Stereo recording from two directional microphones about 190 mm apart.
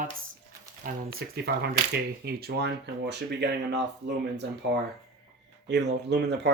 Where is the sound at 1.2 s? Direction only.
65° right (ahead or behind).